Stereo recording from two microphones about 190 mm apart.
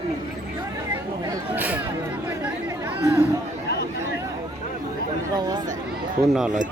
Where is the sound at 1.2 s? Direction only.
20° right (ahead or behind).